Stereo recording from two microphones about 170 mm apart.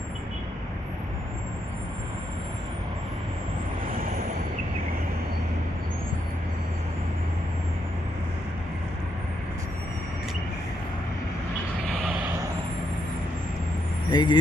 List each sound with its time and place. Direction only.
11.9 s vehicle: 5° right (ahead or behind)
14.1 s speech: 25° left (ahead or behind)